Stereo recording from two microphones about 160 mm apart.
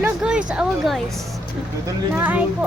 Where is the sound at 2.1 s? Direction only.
10° right (ahead or behind).